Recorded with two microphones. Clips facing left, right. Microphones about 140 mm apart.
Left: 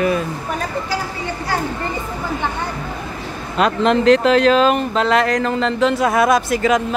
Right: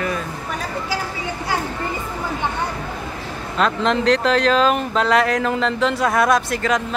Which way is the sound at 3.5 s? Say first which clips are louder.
Left 3 dB; 15° left (ahead or behind).